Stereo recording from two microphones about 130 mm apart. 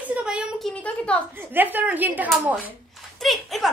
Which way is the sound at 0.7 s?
10° left (ahead or behind).